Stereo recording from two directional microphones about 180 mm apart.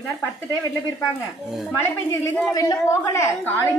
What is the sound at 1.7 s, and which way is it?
A woman's voice, 15° left (ahead or behind).